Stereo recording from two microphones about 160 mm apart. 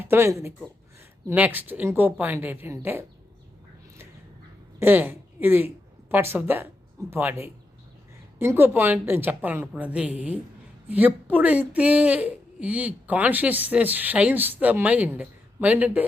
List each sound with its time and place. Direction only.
0.0 s speech: 15° right (ahead or behind)
4.8 s speech: 10° right (ahead or behind)